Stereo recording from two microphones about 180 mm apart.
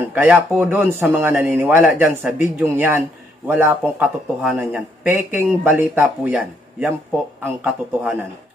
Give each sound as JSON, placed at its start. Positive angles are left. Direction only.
{"t": 0.0, "sound": "speech", "side_deg": -10}